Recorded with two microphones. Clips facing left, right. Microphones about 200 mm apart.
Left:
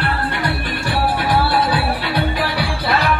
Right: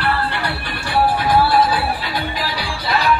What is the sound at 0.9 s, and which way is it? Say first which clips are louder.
Music: right 3 dB; 65° left (ahead or behind).